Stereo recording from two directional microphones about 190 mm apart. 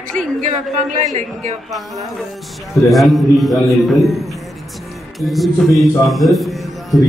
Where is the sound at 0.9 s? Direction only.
40° right (ahead or behind).